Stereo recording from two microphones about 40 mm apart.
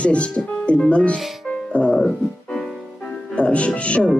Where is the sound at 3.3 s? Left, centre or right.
Left.